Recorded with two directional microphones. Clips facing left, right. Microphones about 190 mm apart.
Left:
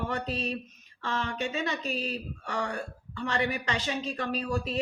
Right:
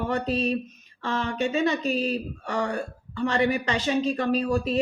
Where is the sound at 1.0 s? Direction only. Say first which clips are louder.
Right 5 dB; 35° right (ahead or behind).